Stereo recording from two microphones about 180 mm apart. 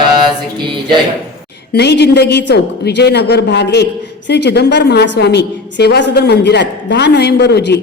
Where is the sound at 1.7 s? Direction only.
70° left (ahead or behind).